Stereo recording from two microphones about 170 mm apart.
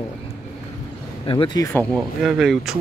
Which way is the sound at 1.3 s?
30° left (ahead or behind).